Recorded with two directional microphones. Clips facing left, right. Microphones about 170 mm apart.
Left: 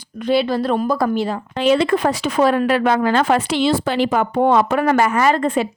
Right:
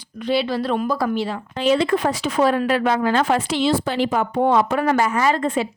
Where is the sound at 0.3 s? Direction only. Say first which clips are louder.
Left 3 dB; 50° left (ahead or behind).